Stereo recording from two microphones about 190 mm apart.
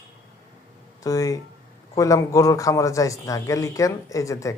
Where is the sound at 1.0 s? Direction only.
20° left (ahead or behind).